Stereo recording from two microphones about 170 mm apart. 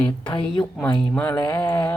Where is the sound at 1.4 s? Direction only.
25° left (ahead or behind).